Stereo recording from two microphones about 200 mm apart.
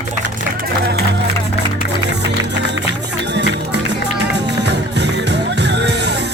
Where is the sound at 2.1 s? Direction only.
60° right (ahead or behind).